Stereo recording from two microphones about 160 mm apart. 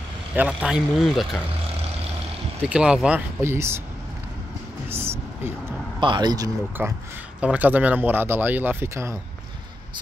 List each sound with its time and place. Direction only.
0.3 s speech: 5° right (ahead or behind)
2.6 s speech: 5° right (ahead or behind)
4.8 s vehicle: 15° right (ahead or behind)
5.9 s speech: 30° right (ahead or behind)
7.3 s speech: 10° right (ahead or behind)